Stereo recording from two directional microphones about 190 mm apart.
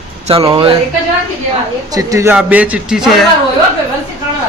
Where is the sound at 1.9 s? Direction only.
15° right (ahead or behind).